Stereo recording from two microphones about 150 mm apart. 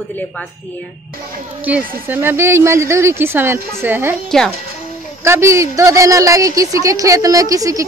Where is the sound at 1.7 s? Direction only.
10° right (ahead or behind).